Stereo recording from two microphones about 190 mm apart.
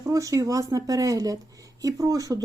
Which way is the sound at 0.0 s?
15° right (ahead or behind).